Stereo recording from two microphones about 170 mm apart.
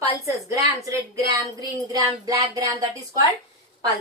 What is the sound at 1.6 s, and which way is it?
A woman's voice, 20° right (ahead or behind).